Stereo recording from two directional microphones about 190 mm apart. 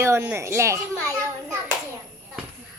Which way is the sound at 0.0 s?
10° right (ahead or behind).